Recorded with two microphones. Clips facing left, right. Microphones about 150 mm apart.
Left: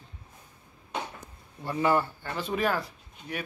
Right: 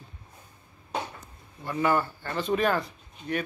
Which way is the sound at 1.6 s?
25° left (ahead or behind).